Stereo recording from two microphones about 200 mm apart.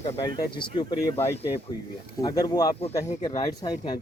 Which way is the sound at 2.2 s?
20° left (ahead or behind).